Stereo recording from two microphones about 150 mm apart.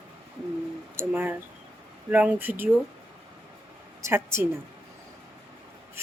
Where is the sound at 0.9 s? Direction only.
15° right (ahead or behind).